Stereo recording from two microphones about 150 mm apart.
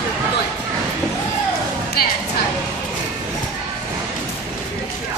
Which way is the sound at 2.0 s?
90° left.